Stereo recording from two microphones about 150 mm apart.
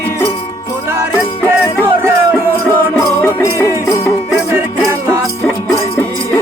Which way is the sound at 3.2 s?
20° left (ahead or behind).